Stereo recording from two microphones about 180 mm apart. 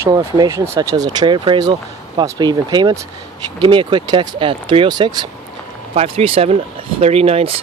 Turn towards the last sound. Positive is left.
turn(degrees=-35)  # may be behind; listen again after turning